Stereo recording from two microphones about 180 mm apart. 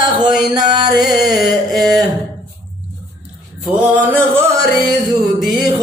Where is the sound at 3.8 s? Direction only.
10° right (ahead or behind).